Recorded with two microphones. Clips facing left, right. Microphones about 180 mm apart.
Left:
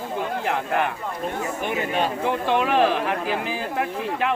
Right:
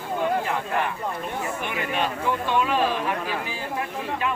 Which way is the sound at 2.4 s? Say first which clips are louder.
Left 4 dB; 65° left (ahead or behind).